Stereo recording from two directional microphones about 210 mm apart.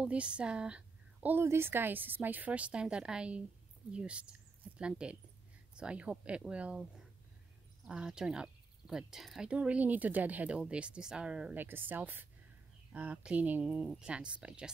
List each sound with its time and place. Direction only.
0.0 s speech: 5° right (ahead or behind)